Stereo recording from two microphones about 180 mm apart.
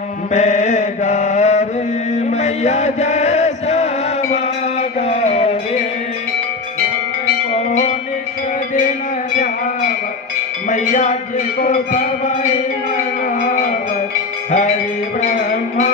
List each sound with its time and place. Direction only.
0.3 s mantra: 40° left (ahead or behind)
2.1 s chant: 40° left (ahead or behind)
5.0 s music: 40° left (ahead or behind)
9.4 s a sound: 45° left (ahead or behind)
10.7 s music: 45° left (ahead or behind)
15.1 s a sound: 40° left (ahead or behind)